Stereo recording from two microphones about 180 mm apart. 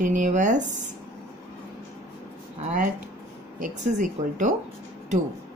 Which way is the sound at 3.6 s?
45° right (ahead or behind).